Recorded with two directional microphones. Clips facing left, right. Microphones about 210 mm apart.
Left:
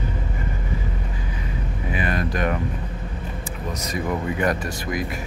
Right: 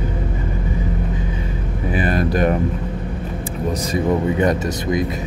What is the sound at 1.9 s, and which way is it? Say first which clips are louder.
Speech: right 6 dB; 35° right (ahead or behind).